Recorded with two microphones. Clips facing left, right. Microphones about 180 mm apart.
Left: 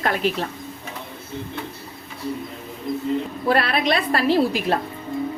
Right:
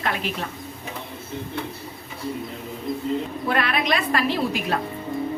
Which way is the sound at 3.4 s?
35° left (ahead or behind).